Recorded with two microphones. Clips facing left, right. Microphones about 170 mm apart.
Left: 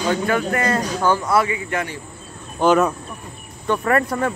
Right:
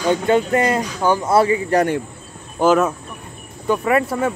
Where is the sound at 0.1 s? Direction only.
20° right (ahead or behind).